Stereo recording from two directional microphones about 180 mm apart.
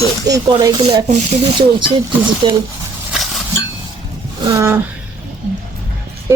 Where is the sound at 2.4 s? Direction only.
25° right (ahead or behind).